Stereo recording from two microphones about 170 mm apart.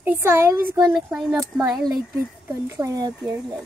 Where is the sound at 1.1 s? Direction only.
Centre (ahead or behind).